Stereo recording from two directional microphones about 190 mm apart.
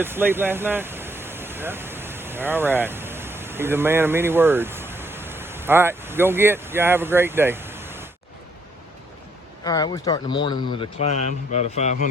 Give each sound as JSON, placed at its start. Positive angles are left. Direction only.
{"t": 0.0, "sound": "speech", "side_deg": -10}
{"t": 9.6, "sound": "a man's voice", "side_deg": 20}